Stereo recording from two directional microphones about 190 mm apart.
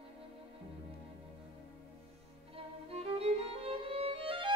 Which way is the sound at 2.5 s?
30° right (ahead or behind).